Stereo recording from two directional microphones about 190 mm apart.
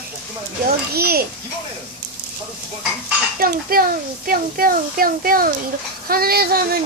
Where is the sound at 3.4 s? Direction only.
50° right (ahead or behind).